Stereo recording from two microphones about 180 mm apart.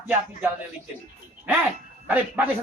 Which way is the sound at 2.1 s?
10° right (ahead or behind).